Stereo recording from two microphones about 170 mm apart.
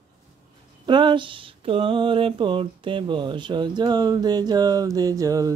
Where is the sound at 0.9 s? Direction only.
30° right (ahead or behind).